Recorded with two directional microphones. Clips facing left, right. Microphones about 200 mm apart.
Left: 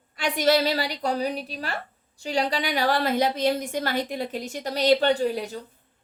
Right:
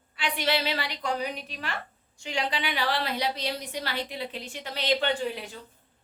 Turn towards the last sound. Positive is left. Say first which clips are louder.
# left 7 dB
turn(degrees=40)  # may be behind; listen again after turning